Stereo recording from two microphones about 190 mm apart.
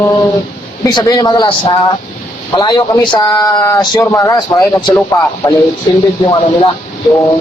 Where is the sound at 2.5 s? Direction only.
20° left (ahead or behind).